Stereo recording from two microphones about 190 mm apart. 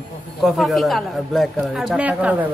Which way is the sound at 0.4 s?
Centre (ahead or behind).